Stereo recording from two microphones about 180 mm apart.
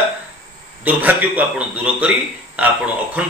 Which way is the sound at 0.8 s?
10° right (ahead or behind).